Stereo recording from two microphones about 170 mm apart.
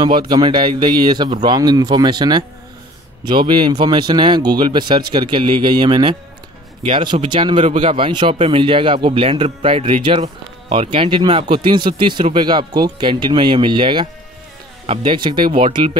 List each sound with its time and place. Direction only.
0.0 s a man's voice: 25° right (ahead or behind)